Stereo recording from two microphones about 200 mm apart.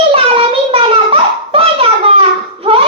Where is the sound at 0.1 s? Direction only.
25° right (ahead or behind).